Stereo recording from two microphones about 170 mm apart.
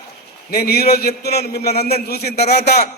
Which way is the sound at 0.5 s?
65° left (ahead or behind).